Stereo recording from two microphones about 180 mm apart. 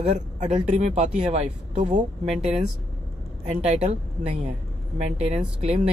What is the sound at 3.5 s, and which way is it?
Speech, 40° right (ahead or behind).